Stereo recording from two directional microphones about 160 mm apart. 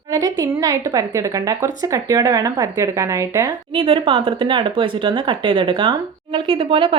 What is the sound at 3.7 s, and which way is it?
Speech, 35° right (ahead or behind).